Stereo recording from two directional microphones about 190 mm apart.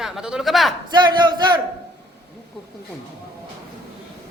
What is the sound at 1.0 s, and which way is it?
Speech, 25° right (ahead or behind).